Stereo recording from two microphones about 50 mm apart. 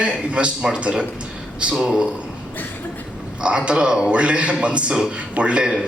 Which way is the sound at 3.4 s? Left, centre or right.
Right.